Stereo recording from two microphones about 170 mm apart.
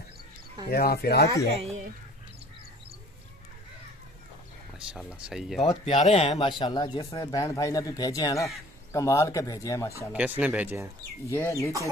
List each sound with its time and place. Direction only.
0.7 s speech: 65° left (ahead or behind)
4.7 s speech: 5° right (ahead or behind)
5.6 s speech: 35° left (ahead or behind)
6.6 s speech: 25° left (ahead or behind)
10.1 s speech: 10° right (ahead or behind)
11.3 s speech: 15° left (ahead or behind)